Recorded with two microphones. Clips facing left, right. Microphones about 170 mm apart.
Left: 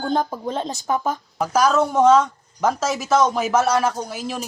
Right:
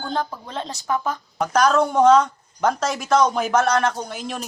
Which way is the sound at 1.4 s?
5° left (ahead or behind).